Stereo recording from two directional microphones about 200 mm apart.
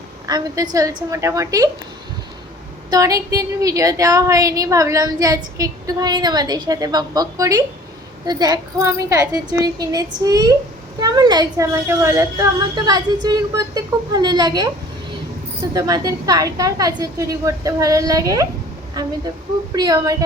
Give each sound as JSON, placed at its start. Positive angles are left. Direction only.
{"t": 0.3, "sound": "a woman's voice", "side_deg": -20}
{"t": 2.9, "sound": "a woman's voice", "side_deg": -15}
{"t": 15.7, "sound": "a woman's voice", "side_deg": -15}
{"t": 19.7, "sound": "a woman's voice", "side_deg": -20}